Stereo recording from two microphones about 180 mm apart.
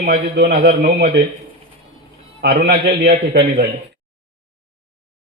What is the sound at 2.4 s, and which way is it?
A man's voice, 65° right (ahead or behind).